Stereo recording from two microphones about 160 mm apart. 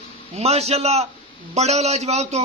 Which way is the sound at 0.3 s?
40° right (ahead or behind).